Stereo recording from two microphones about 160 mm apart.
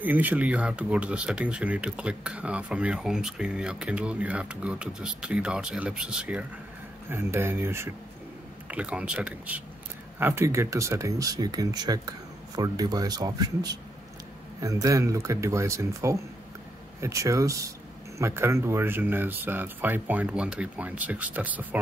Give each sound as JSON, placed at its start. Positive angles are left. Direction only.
{"t": 0.0, "sound": "speech", "side_deg": -10}